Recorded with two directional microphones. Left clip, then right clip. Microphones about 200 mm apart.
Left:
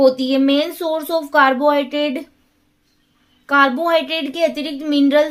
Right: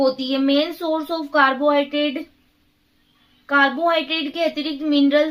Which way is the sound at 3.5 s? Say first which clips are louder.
Left 3 dB; 45° left (ahead or behind).